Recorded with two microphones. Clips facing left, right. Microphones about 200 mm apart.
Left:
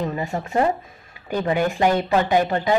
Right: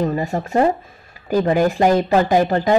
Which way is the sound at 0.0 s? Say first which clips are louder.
Right 5 dB; 40° right (ahead or behind).